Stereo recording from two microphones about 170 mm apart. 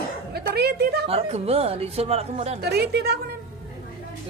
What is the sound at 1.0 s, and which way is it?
Speech, 35° right (ahead or behind).